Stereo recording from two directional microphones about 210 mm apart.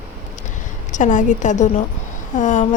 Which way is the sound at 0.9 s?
35° left (ahead or behind).